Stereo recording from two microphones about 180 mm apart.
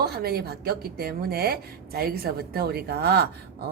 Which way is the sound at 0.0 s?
60° right (ahead or behind).